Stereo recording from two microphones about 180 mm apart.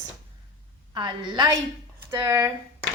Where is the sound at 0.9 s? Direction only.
25° right (ahead or behind).